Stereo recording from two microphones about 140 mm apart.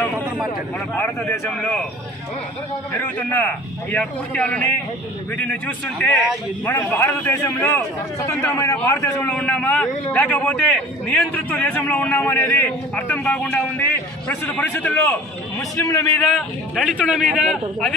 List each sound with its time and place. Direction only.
0.9 s a man's voice: 15° left (ahead or behind)
2.9 s a man's voice: 15° left (ahead or behind)
9.3 s a man's voice: 10° left (ahead or behind)
16.2 s a man's voice: centre (ahead or behind)